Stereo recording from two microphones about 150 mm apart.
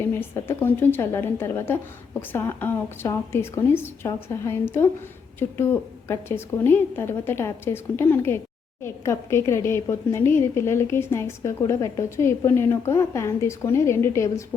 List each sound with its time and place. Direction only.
0.0 s a woman's voice: 15° left (ahead or behind)